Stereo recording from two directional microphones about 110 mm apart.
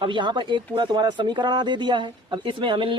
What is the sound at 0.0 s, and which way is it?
Speech, 45° right (ahead or behind).